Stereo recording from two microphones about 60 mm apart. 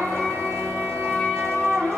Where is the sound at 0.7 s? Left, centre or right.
Right.